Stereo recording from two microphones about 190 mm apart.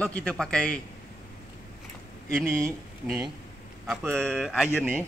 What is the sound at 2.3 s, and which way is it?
A man's voice, centre (ahead or behind).